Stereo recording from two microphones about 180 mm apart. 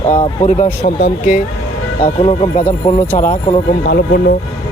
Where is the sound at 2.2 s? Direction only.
35° left (ahead or behind).